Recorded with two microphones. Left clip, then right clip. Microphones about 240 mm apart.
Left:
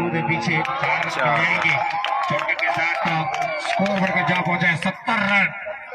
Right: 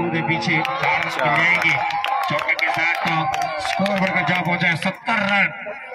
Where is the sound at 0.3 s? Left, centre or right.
Right.